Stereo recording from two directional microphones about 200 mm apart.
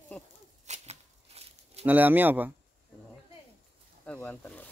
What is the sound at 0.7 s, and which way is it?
Shuffling cards, 30° right (ahead or behind).